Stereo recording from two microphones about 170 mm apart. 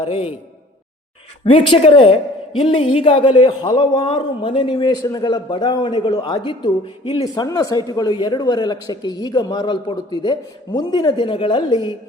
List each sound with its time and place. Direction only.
0.0 s a woman's voice: 35° left (ahead or behind)
1.5 s a woman's voice: 30° left (ahead or behind)